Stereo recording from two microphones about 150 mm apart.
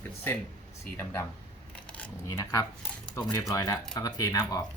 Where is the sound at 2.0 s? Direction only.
25° left (ahead or behind).